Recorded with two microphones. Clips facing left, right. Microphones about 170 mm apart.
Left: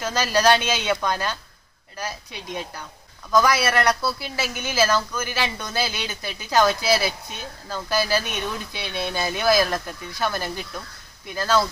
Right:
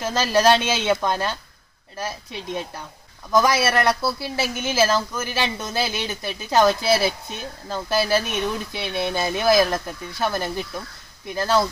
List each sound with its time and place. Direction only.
0.0 s speech: 25° right (ahead or behind)